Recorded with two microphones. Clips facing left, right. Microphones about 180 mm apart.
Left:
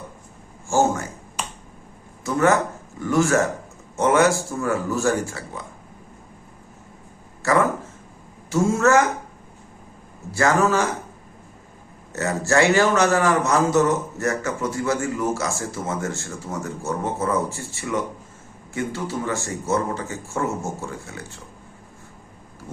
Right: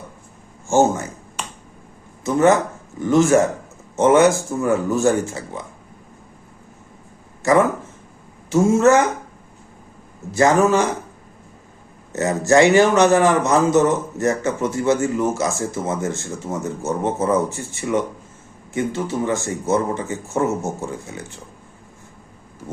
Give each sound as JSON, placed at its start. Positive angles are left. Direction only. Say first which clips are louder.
{"t": 0.7, "sound": "a man's voice", "louder": "right 4 dB", "side_deg": -20}
{"t": 2.2, "sound": "a man's voice", "louder": "right 4 dB", "side_deg": -20}
{"t": 7.4, "sound": "a man's voice", "louder": "right 4 dB", "side_deg": -20}
{"t": 10.3, "sound": "a man's voice", "louder": "right 4 dB", "side_deg": -20}
{"t": 12.1, "sound": "a man's voice", "louder": "right 5 dB", "side_deg": -20}